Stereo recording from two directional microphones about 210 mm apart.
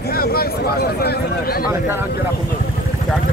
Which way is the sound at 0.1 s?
45° left (ahead or behind).